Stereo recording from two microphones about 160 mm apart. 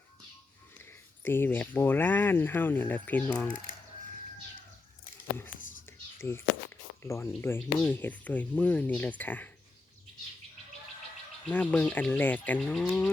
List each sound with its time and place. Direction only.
0.8 s speech: 15° left (ahead or behind)
5.5 s whispering: 55° left (ahead or behind)
6.1 s speech: 15° left (ahead or behind)
11.4 s speech: 10° left (ahead or behind)